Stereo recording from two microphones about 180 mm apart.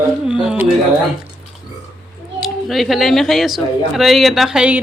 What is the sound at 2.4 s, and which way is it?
Speech, centre (ahead or behind).